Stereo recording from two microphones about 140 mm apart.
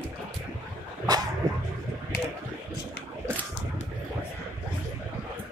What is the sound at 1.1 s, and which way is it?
Dog, 30° right (ahead or behind).